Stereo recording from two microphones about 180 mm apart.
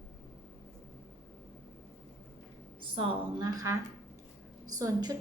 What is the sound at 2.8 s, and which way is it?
A woman's voice, 25° right (ahead or behind).